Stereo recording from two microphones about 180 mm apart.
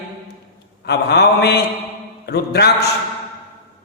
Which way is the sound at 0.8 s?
65° left (ahead or behind).